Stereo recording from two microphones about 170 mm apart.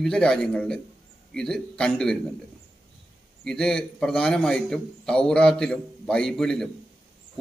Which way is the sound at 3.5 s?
5° left (ahead or behind).